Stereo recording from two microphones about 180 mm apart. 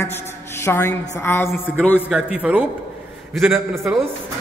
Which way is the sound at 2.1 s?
5° right (ahead or behind).